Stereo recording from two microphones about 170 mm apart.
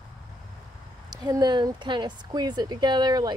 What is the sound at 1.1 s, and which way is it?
Speech, 25° right (ahead or behind).